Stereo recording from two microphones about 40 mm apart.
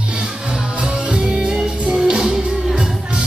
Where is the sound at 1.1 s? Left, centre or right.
Centre.